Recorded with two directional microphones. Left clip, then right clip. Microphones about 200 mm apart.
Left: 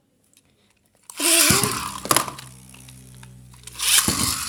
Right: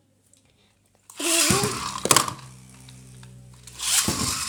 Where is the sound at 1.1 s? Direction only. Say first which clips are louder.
Left 3 dB; 20° left (ahead or behind).